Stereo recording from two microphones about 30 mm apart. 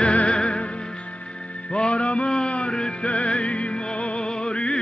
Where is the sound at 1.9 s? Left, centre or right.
Left.